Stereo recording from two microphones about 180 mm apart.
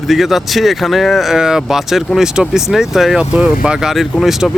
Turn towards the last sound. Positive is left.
turn(degrees=0)  # may be behind; listen again after turning